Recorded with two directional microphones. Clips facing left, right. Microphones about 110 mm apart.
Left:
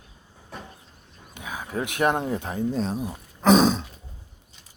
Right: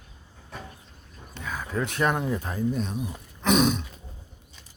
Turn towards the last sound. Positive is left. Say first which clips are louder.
# left 4 dB
turn(degrees=35)  # may be behind; listen again after turning